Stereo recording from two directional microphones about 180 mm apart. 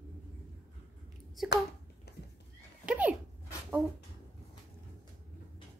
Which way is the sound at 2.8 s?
10° right (ahead or behind).